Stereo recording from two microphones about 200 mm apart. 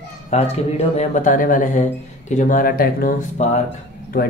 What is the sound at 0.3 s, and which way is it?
Speech, 30° left (ahead or behind).